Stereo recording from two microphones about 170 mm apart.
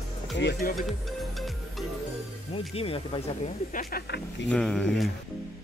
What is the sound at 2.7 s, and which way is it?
Speech, 35° left (ahead or behind).